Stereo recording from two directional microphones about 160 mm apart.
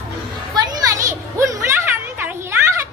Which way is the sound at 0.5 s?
25° right (ahead or behind).